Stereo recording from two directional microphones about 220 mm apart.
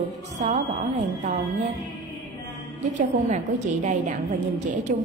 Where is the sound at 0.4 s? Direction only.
30° right (ahead or behind).